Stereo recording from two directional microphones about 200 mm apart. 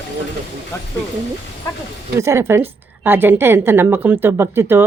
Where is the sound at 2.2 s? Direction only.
15° right (ahead or behind).